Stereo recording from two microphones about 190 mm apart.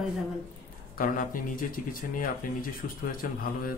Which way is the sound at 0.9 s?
45° left (ahead or behind).